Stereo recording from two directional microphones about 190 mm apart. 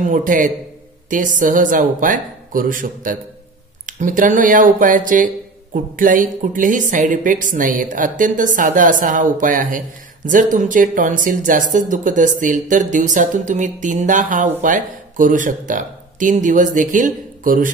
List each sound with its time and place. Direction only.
0.0 s speech: 45° right (ahead or behind)